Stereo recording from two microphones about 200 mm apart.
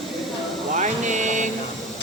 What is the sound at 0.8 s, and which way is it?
Vehicle, 35° right (ahead or behind).